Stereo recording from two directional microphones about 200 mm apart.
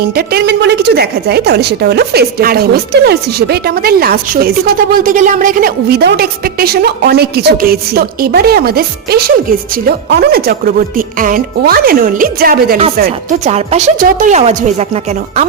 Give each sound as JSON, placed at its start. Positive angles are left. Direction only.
{"t": 0.0, "sound": "a woman's voice", "side_deg": -50}
{"t": 13.4, "sound": "speech", "side_deg": -35}